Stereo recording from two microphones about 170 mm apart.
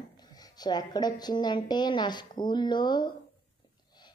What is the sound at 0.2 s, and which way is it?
A woman's voice, 25° left (ahead or behind).